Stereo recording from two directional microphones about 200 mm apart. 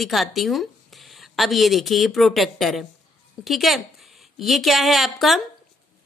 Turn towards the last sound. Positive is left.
turn(degrees=0)  # may be behind; listen again after turning